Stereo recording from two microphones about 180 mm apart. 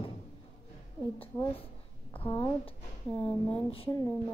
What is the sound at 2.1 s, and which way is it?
Speech, 25° left (ahead or behind).